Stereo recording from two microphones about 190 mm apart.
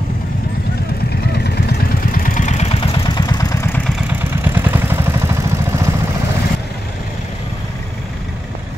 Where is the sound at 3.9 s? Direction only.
10° right (ahead or behind).